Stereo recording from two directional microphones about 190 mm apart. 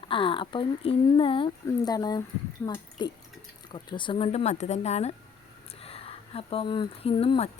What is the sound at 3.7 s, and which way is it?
Speech, 25° left (ahead or behind).